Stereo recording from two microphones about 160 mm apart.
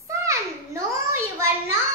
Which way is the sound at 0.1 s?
20° right (ahead or behind).